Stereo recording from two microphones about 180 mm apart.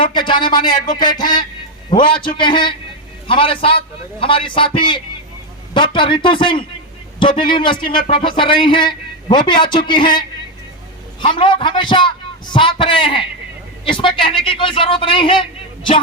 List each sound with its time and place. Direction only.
0.0 s a man's voice: 25° left (ahead or behind)